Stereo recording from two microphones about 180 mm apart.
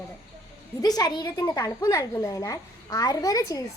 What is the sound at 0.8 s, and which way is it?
A woman's voice, 20° left (ahead or behind).